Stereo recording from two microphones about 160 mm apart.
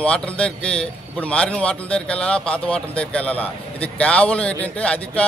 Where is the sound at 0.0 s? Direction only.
10° left (ahead or behind).